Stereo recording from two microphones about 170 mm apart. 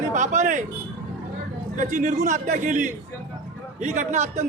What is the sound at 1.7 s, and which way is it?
A man's voice, 45° right (ahead or behind).